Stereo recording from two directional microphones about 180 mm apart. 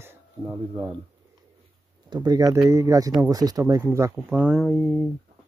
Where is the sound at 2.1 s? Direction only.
25° right (ahead or behind).